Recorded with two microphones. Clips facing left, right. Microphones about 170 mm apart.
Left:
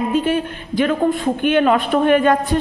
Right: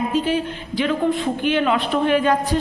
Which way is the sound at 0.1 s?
55° left (ahead or behind).